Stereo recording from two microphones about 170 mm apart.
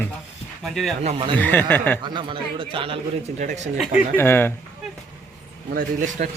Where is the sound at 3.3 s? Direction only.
45° right (ahead or behind).